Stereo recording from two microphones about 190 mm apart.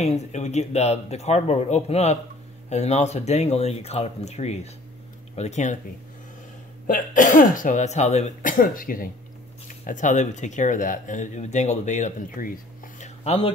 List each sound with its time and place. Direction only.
0.0 s speech: 35° left (ahead or behind)
6.9 s speech: 45° left (ahead or behind)
13.0 s a sound: 35° left (ahead or behind)